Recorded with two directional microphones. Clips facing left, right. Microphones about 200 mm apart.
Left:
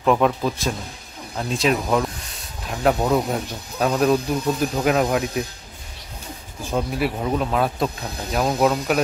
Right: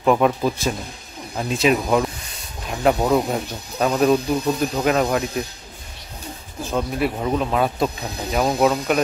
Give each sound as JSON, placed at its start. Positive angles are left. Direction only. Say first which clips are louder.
{"t": 0.0, "sound": "speech", "louder": "right 1 dB", "side_deg": -5}
{"t": 6.7, "sound": "speech", "louder": "right 1 dB", "side_deg": 5}